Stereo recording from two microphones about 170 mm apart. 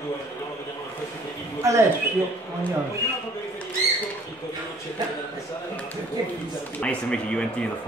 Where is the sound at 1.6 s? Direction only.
20° right (ahead or behind).